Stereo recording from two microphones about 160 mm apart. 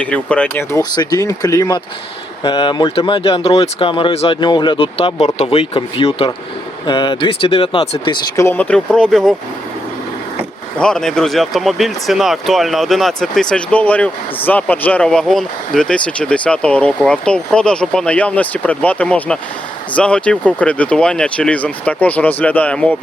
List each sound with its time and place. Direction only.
0.0 s speech: 10° left (ahead or behind)
0.8 s speech: 25° left (ahead or behind)
2.4 s speech: 30° left (ahead or behind)
8.4 s speech: 15° left (ahead or behind)
10.8 s speech: 5° left (ahead or behind)